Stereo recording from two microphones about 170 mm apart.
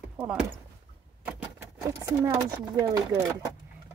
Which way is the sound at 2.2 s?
25° right (ahead or behind).